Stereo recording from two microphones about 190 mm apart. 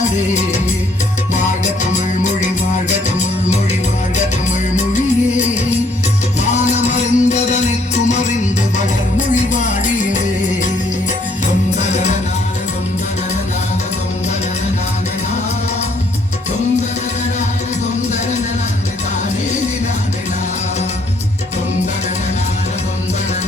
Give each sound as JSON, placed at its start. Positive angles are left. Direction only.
{"t": 6.4, "sound": "music", "side_deg": 40}
{"t": 11.8, "sound": "music", "side_deg": 40}